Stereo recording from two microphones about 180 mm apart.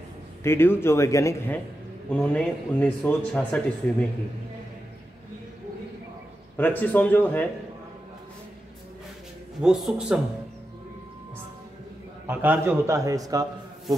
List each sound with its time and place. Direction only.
0.4 s a man's voice: 15° left (ahead or behind)
6.5 s a man's voice: 10° left (ahead or behind)
9.6 s a man's voice: centre (ahead or behind)
12.3 s a man's voice: 10° right (ahead or behind)